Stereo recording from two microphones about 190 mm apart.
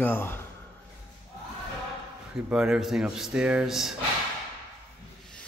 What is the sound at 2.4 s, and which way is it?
Speech, 5° right (ahead or behind).